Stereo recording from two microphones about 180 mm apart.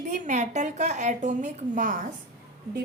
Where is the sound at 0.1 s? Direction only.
40° right (ahead or behind).